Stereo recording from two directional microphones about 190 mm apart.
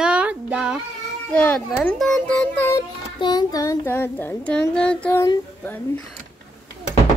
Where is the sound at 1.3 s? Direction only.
5° left (ahead or behind).